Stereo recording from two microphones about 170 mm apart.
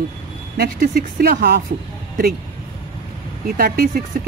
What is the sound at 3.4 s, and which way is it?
Speech, 65° right (ahead or behind).